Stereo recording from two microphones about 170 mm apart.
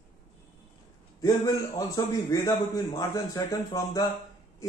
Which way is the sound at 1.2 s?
20° left (ahead or behind).